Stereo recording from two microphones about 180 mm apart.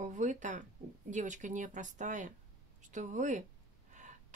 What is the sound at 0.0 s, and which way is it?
Speech, 45° right (ahead or behind).